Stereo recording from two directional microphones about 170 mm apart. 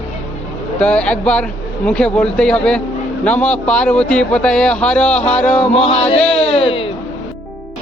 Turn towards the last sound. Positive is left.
turn(degrees=35)  # may be behind; listen again after turning